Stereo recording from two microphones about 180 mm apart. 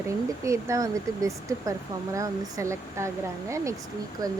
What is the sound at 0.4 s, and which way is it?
Speech, 15° right (ahead or behind).